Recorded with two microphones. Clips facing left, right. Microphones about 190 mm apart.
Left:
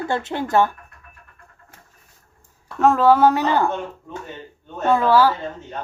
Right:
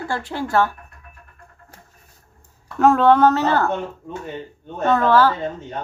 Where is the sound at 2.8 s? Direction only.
Centre (ahead or behind).